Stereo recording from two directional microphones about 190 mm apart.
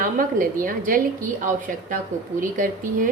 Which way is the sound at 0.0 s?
45° right (ahead or behind).